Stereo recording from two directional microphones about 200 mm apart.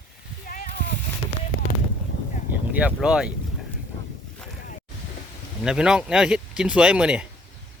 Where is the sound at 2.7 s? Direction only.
5° right (ahead or behind).